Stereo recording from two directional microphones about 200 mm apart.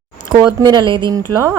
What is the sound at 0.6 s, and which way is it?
Speech, 20° right (ahead or behind).